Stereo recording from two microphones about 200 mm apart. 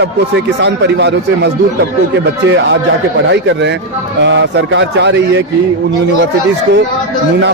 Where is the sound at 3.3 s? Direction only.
60° right (ahead or behind).